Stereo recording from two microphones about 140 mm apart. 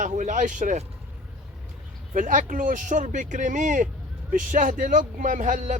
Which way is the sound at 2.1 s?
70° right (ahead or behind).